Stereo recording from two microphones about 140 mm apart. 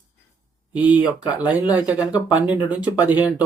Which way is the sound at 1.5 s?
10° right (ahead or behind).